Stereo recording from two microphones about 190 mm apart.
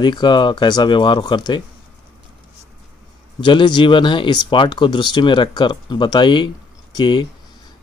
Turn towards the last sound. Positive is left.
turn(degrees=20)  # may be behind; listen again after turning